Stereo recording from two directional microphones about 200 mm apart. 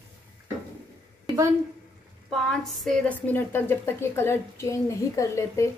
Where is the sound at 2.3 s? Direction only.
Centre (ahead or behind).